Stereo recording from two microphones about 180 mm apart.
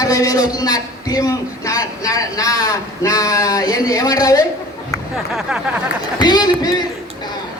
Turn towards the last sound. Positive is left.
turn(degrees=20)  # may be behind; listen again after turning